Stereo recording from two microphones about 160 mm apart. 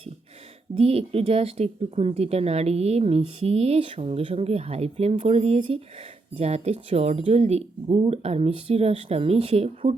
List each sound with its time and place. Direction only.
0.7 s speech: 35° right (ahead or behind)